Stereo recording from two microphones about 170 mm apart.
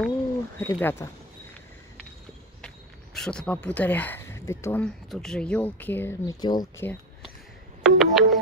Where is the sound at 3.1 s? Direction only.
5° left (ahead or behind).